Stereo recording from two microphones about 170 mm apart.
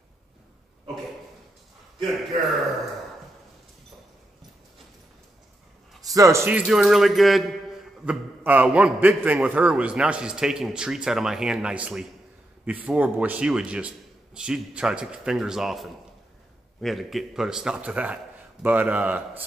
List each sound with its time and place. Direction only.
6.0 s speech: 20° right (ahead or behind)
6.7 s a man's voice: centre (ahead or behind)